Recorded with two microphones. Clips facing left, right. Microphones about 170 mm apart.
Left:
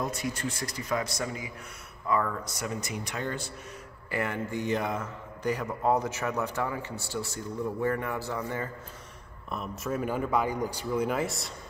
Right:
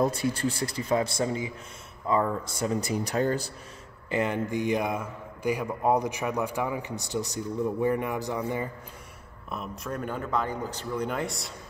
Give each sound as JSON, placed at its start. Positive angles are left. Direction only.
{"t": 0.0, "sound": "a man's voice", "side_deg": -30}
{"t": 4.1, "sound": "a man's voice", "side_deg": -20}
{"t": 9.5, "sound": "speech", "side_deg": 0}